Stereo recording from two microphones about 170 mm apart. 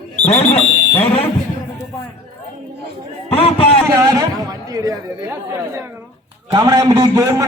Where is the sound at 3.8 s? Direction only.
20° right (ahead or behind).